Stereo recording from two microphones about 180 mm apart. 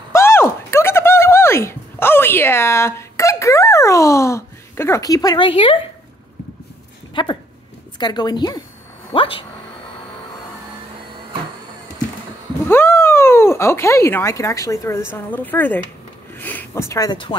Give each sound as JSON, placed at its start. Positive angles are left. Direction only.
{"t": 0.1, "sound": "a sound", "side_deg": 15}
{"t": 7.2, "sound": "a woman's voice", "side_deg": 25}
{"t": 12.6, "sound": "speech", "side_deg": 15}